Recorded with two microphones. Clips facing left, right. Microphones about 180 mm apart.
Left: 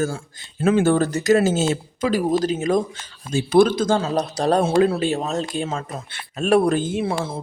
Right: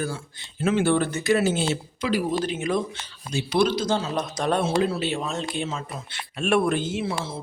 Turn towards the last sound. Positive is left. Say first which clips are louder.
# left 4 dB
turn(degrees=50)  # may be behind; listen again after turning